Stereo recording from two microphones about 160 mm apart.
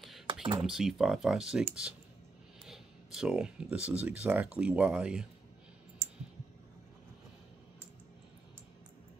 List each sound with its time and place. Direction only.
0.3 s computer keyboard: 30° right (ahead or behind)
0.6 s speech: centre (ahead or behind)